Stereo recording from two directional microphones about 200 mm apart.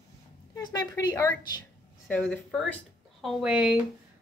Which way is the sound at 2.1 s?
5° left (ahead or behind).